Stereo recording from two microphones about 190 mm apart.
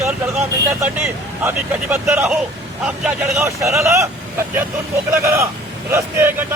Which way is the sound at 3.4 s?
15° right (ahead or behind).